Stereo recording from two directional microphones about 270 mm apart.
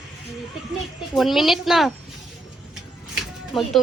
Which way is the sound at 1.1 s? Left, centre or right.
Centre.